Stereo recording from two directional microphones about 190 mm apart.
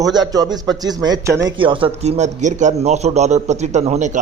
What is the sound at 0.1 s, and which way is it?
A man's voice, 20° right (ahead or behind).